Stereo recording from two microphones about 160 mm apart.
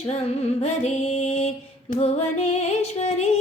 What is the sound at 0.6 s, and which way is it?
Music, 40° left (ahead or behind).